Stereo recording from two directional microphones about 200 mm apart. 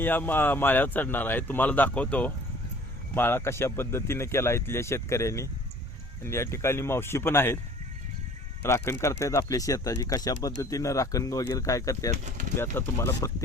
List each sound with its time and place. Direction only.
0.0 s speech: 10° left (ahead or behind)
8.6 s speech: 15° left (ahead or behind)
12.1 s speech: 35° right (ahead or behind)
12.7 s speech: 15° left (ahead or behind)